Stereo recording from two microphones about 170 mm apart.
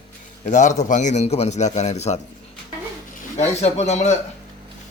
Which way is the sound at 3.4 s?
40° left (ahead or behind).